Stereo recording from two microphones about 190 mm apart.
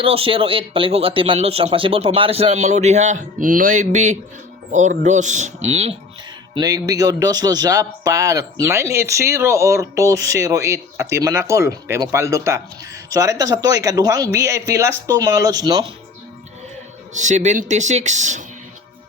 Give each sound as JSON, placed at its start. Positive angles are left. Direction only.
{"t": 0.0, "sound": "speech", "side_deg": -30}
{"t": 6.5, "sound": "speech", "side_deg": -20}
{"t": 17.2, "sound": "speech", "side_deg": -40}